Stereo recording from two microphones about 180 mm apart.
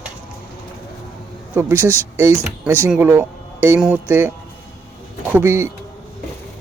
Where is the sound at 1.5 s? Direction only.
10° right (ahead or behind).